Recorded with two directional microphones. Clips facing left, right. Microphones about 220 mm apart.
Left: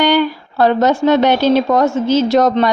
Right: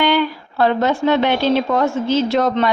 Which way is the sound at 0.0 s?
40° left (ahead or behind).